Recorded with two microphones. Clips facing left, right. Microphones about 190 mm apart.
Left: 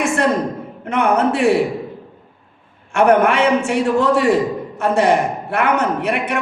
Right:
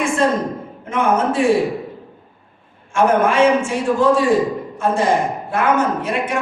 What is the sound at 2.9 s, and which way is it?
A man's voice, 65° left (ahead or behind).